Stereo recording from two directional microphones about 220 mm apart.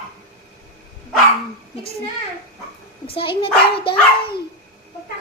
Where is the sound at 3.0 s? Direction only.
25° left (ahead or behind).